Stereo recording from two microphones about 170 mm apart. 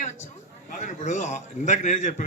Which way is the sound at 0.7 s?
45° left (ahead or behind).